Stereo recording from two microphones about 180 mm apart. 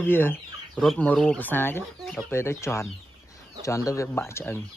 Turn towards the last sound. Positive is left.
turn(degrees=15)  # may be behind; listen again after turning